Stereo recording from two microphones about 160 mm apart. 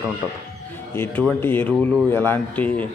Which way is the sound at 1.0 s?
10° left (ahead or behind).